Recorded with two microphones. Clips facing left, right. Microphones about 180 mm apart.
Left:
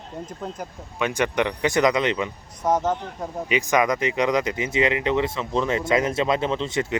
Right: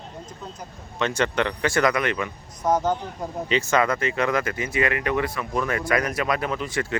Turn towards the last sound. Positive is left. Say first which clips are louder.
# left 2 dB
turn(degrees=20)  # may be behind; listen again after turning